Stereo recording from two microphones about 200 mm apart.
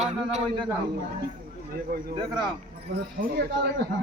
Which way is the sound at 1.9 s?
50° right (ahead or behind).